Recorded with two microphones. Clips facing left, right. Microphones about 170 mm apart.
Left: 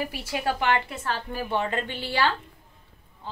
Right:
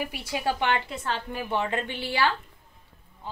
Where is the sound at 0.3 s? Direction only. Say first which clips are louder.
Left 1 dB; 20° right (ahead or behind).